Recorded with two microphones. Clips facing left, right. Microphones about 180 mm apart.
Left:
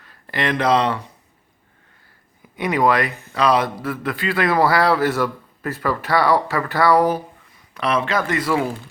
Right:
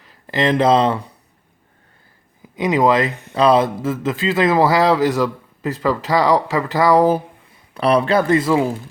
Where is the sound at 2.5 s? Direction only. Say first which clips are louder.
Right 3 dB; 20° right (ahead or behind).